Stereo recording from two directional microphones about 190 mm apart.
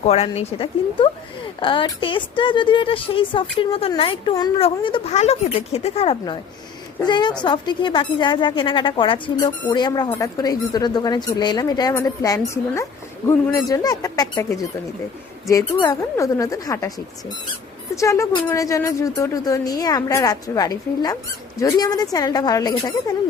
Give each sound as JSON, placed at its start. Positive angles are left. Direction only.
{"t": 0.0, "sound": "a woman's voice", "side_deg": 35}
{"t": 15.4, "sound": "a woman's voice", "side_deg": 20}
{"t": 17.9, "sound": "a woman's voice", "side_deg": 15}